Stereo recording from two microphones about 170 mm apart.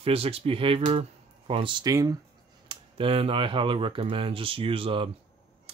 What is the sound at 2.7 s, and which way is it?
Speech, 30° right (ahead or behind).